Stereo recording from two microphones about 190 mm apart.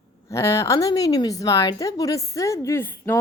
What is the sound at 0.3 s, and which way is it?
A woman's voice, 15° left (ahead or behind).